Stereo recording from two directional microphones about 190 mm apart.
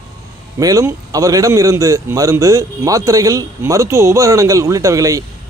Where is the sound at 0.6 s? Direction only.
20° right (ahead or behind).